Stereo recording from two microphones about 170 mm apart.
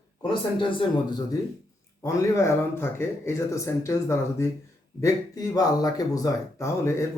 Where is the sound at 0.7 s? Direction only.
25° left (ahead or behind).